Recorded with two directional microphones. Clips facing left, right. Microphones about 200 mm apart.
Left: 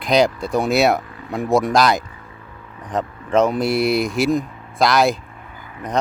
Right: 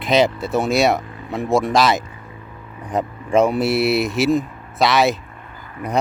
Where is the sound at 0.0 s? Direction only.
Centre (ahead or behind).